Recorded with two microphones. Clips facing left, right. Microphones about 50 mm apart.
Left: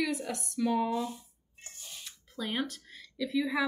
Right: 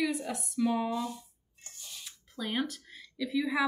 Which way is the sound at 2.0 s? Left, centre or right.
Centre.